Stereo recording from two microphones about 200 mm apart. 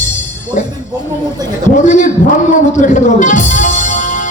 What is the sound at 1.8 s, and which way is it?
A man's voice, 35° left (ahead or behind).